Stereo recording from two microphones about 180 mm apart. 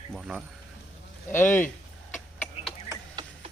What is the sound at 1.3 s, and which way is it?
Speech, 10° left (ahead or behind).